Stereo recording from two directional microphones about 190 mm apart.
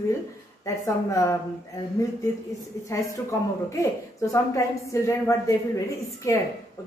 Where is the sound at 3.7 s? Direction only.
15° left (ahead or behind).